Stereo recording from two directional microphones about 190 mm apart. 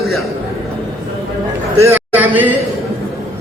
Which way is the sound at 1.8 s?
10° right (ahead or behind).